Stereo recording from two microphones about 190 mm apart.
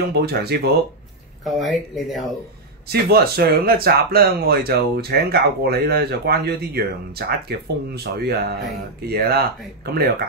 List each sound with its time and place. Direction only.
0.1 s speech: 55° right (ahead or behind)
1.4 s speech: centre (ahead or behind)
2.9 s speech: 55° right (ahead or behind)